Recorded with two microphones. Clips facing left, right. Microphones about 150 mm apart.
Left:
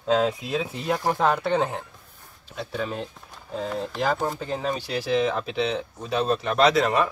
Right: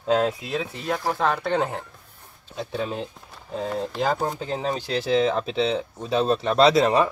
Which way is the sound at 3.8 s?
20° right (ahead or behind).